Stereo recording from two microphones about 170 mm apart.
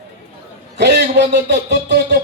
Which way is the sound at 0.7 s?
85° right.